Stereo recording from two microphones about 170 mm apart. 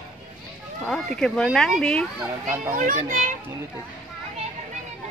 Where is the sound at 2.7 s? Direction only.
50° right (ahead or behind).